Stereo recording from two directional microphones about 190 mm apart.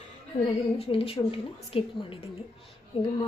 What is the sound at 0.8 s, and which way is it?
A woman's voice, 30° left (ahead or behind).